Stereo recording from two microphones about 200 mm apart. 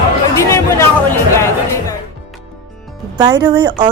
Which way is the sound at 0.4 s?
15° left (ahead or behind).